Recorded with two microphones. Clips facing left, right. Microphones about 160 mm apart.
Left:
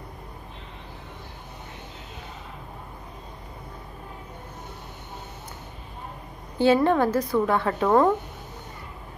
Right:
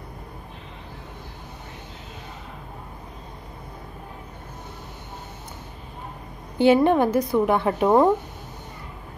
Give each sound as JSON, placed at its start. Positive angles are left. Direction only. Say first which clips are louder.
{"t": 6.6, "sound": "a woman's voice", "louder": "right 2 dB", "side_deg": -20}